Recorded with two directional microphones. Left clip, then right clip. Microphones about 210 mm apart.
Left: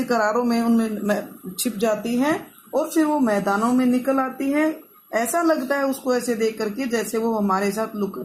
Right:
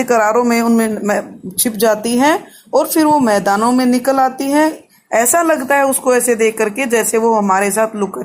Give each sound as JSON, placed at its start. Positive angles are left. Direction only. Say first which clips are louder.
{"t": 0.0, "sound": "speech", "louder": "right 8 dB", "side_deg": -40}